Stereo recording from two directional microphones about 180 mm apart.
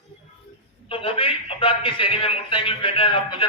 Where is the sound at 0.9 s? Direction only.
30° left (ahead or behind).